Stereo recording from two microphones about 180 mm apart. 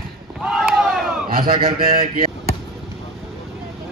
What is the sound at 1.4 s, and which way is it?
Speech, 30° right (ahead or behind).